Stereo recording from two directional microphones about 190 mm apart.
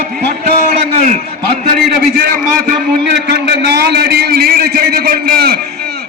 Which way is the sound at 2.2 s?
55° right (ahead or behind).